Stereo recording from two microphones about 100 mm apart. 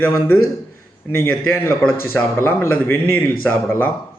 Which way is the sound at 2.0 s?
20° left (ahead or behind).